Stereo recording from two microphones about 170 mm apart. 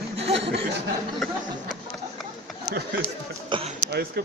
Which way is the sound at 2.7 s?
75° right (ahead or behind).